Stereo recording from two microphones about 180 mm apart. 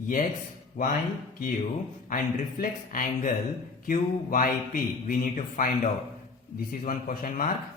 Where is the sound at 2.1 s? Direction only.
50° left (ahead or behind).